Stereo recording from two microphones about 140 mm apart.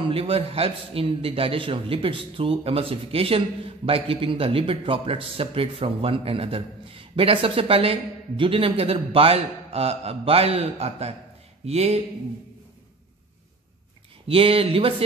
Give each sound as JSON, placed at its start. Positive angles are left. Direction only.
{"t": 0.1, "sound": "a man's voice", "side_deg": -40}
{"t": 14.2, "sound": "a man's voice", "side_deg": -40}